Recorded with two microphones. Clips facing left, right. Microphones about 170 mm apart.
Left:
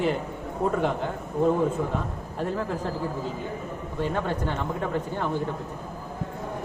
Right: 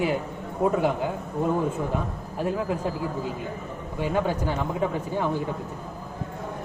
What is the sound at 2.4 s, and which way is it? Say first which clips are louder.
Speech: right 2 dB; 10° right (ahead or behind).